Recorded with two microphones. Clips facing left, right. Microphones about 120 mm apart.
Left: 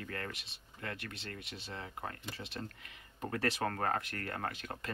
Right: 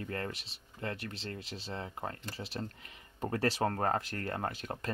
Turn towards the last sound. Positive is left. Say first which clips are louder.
# right 3 dB
turn(degrees=-35)  # may be behind; listen again after turning